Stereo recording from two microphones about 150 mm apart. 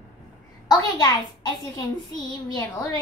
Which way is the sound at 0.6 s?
30° left (ahead or behind).